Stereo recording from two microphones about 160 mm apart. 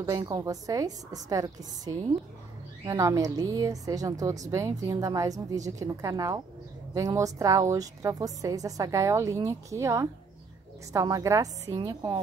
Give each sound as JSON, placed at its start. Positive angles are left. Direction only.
{"t": 0.3, "sound": "a woman's voice", "side_deg": -20}